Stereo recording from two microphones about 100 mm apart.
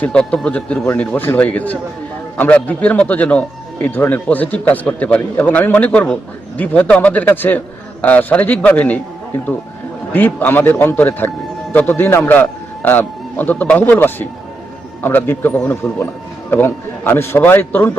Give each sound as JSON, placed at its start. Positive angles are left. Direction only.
{"t": 0.0, "sound": "a man's voice", "side_deg": 10}
{"t": 10.1, "sound": "a man's voice", "side_deg": 15}